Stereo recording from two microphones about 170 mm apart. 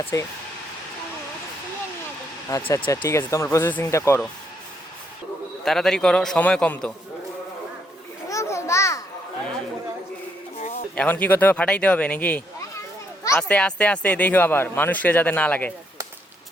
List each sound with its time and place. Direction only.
0.1 s speech: 20° left (ahead or behind)
2.5 s speech: 15° left (ahead or behind)
5.6 s a man's voice: centre (ahead or behind)
8.3 s a sound: 15° left (ahead or behind)
10.9 s a child's voice: 10° left (ahead or behind)